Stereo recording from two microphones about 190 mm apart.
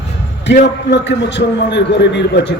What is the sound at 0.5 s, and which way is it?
A man's voice, 55° left (ahead or behind).